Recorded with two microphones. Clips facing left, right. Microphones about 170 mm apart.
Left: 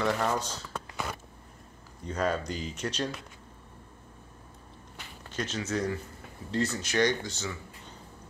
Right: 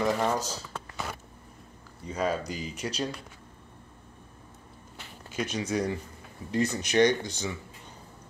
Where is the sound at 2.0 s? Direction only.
5° right (ahead or behind).